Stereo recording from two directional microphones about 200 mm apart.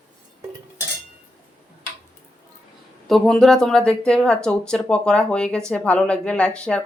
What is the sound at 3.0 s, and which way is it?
Speech, centre (ahead or behind).